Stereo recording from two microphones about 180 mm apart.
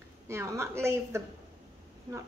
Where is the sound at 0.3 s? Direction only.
15° right (ahead or behind).